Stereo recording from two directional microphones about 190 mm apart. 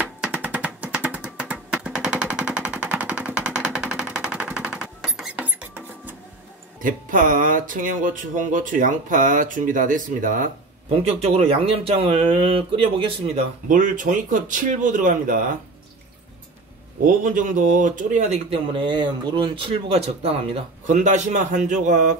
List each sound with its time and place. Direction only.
0.2 s music: 5° right (ahead or behind)
6.8 s speech: 45° right (ahead or behind)
11.1 s speech: 30° right (ahead or behind)
13.7 s speech: 45° right (ahead or behind)
17.0 s speech: 45° right (ahead or behind)